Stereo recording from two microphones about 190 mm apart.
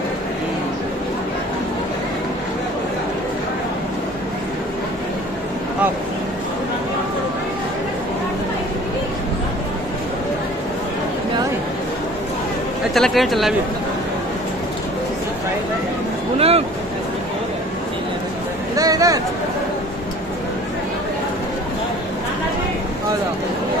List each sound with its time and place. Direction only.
12.9 s speech: centre (ahead or behind)
16.3 s vehicle: 30° right (ahead or behind)
18.8 s a sound: 20° right (ahead or behind)